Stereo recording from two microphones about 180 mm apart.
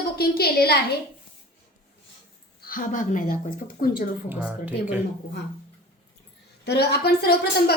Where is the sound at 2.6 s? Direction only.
50° left (ahead or behind).